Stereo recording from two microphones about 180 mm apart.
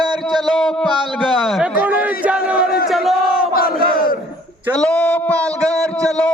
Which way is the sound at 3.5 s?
55° left (ahead or behind).